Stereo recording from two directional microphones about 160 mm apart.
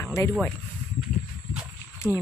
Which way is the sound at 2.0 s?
Centre (ahead or behind).